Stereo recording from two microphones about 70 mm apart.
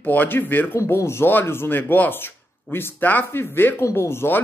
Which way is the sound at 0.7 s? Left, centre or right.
Left.